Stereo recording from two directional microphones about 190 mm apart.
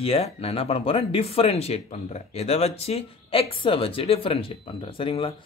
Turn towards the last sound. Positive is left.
turn(degrees=30)  # may be behind; listen again after turning